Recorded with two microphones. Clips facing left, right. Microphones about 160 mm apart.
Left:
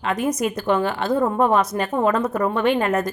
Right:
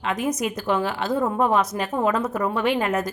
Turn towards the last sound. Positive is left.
turn(degrees=-5)  # may be behind; listen again after turning